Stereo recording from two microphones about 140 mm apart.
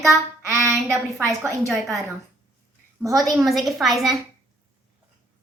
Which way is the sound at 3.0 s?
25° right (ahead or behind).